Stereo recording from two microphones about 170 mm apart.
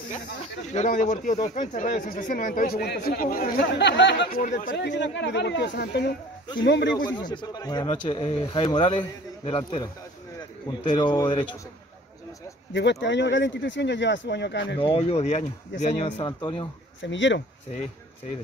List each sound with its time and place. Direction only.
0.1 s speech: 45° left (ahead or behind)
3.7 s speech: 85° left
4.4 s speech: 50° left (ahead or behind)
4.7 s speech: 90° left; by 6.1 s 75° left (ahead or behind)
6.6 s speech: 85° left
7.1 s speech: 25° left (ahead or behind)
12.7 s speech: 90° left
14.8 s speech: 35° left (ahead or behind)
16.3 s speech: 25° left (ahead or behind)
17.0 s speech: 90° left